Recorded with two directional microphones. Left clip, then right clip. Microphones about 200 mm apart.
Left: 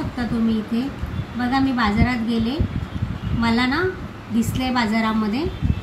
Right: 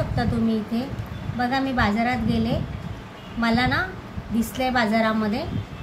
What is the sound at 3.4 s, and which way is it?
A woman's voice, 50° right (ahead or behind).